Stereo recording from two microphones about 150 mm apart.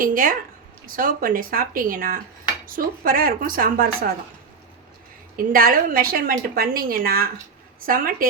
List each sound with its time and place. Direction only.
0.0 s a woman's voice: 65° right (ahead or behind)
5.4 s a woman's voice: 70° right (ahead or behind)